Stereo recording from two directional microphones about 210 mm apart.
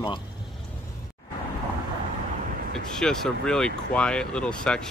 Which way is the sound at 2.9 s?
5° left (ahead or behind).